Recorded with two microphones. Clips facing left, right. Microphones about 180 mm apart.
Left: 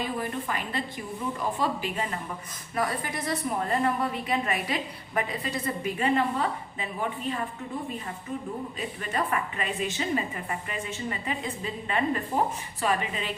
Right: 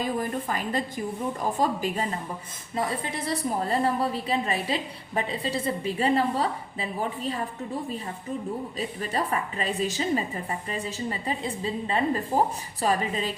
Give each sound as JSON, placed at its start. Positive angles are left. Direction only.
{"t": 0.0, "sound": "a woman's voice", "side_deg": -40}
{"t": 2.7, "sound": "a woman's voice", "side_deg": -25}
{"t": 9.0, "sound": "a woman's voice", "side_deg": -35}